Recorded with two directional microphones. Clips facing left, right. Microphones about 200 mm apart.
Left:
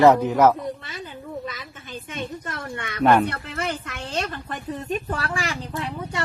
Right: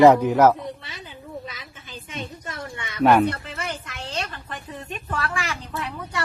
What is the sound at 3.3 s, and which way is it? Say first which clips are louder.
Speech: left 3 dB; 60° left (ahead or behind).